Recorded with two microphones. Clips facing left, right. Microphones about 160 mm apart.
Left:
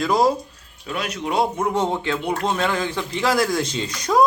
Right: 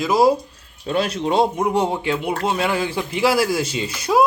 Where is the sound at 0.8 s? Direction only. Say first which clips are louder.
Right 6 dB; 30° right (ahead or behind).